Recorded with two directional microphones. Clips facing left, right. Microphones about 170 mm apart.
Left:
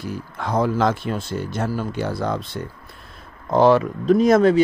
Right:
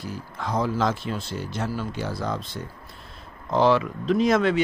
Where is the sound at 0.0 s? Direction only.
60° left (ahead or behind).